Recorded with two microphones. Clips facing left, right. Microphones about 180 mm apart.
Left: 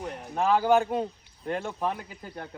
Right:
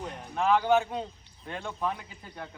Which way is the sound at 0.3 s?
40° left (ahead or behind).